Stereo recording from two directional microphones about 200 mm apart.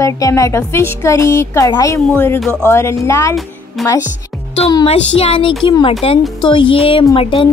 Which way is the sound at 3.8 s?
Centre (ahead or behind).